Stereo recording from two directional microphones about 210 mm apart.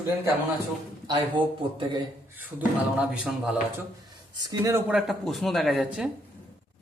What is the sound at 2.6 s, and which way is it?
Speech, 5° right (ahead or behind).